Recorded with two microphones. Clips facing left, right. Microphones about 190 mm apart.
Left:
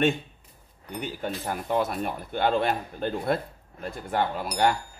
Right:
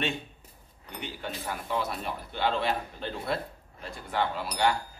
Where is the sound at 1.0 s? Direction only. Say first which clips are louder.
Left 5 dB; 45° left (ahead or behind).